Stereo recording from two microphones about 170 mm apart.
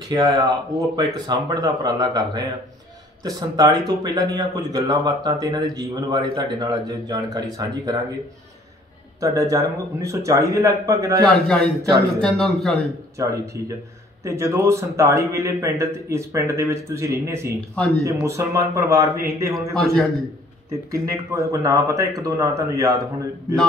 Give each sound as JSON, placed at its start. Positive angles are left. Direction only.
{"t": 0.1, "sound": "speech", "side_deg": -25}
{"t": 9.2, "sound": "speech", "side_deg": -20}
{"t": 11.2, "sound": "a man's voice", "side_deg": 5}
{"t": 13.2, "sound": "a man's voice", "side_deg": -15}
{"t": 19.8, "sound": "a man's voice", "side_deg": 0}
{"t": 20.9, "sound": "speech", "side_deg": -20}